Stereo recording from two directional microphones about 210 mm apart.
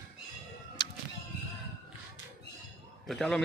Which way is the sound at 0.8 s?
20° left (ahead or behind).